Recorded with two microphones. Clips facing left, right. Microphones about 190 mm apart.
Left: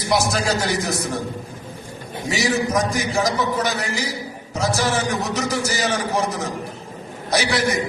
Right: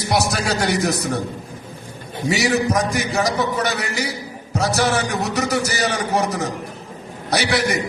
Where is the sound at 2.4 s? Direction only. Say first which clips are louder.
Even; 65° right (ahead or behind).